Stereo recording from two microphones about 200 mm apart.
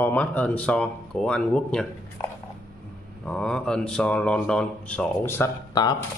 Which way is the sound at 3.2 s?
5° left (ahead or behind).